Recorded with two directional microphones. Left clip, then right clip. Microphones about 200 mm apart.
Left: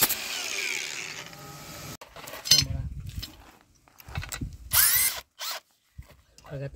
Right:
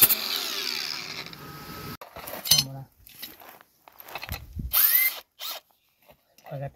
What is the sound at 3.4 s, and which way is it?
Mechanisms, 40° right (ahead or behind).